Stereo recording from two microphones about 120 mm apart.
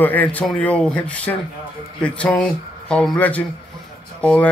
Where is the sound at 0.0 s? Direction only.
15° left (ahead or behind).